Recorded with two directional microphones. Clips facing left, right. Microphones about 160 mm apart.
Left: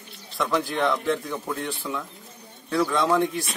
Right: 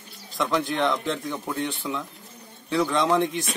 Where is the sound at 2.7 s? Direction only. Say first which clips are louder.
Even; centre (ahead or behind).